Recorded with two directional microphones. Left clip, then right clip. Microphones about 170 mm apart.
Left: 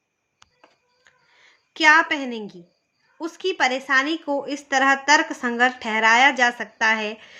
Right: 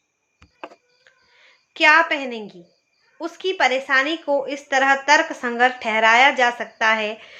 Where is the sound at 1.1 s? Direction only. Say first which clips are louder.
Right 1 dB; 30° left (ahead or behind).